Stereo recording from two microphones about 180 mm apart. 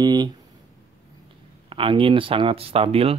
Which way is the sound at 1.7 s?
30° right (ahead or behind).